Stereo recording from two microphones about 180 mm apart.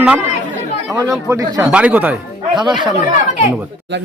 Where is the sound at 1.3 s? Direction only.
15° right (ahead or behind).